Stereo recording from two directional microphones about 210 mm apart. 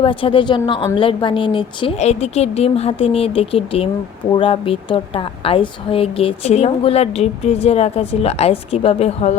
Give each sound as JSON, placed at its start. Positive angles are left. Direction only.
{"t": 0.0, "sound": "a woman's voice", "side_deg": 25}